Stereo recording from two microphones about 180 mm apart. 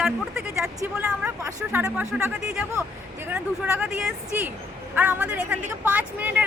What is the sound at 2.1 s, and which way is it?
Speech, 5° right (ahead or behind).